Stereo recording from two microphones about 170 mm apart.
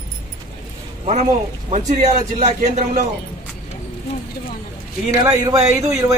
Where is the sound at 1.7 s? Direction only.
45° right (ahead or behind).